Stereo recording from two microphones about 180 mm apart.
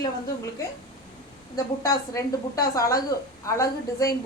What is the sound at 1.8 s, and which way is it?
A woman's voice, 15° left (ahead or behind).